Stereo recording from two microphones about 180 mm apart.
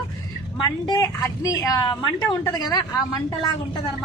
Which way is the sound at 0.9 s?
15° left (ahead or behind).